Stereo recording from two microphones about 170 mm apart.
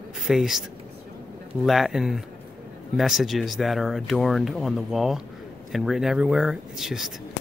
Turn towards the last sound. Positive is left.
turn(degrees=0)  # may be behind; listen again after turning